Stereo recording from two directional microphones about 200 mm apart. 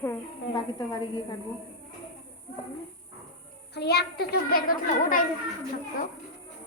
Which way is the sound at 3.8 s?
55° left (ahead or behind).